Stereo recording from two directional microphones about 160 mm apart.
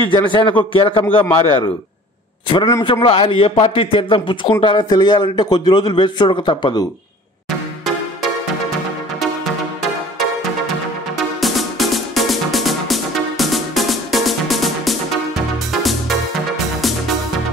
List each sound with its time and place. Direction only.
0.1 s a man's voice: 30° left (ahead or behind)
2.5 s a man's voice: 30° left (ahead or behind)
11.1 s music: centre (ahead or behind)